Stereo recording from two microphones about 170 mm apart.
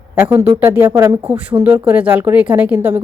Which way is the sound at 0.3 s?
25° right (ahead or behind).